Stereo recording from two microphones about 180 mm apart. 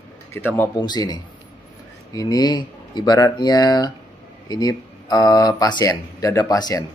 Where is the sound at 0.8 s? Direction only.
20° left (ahead or behind).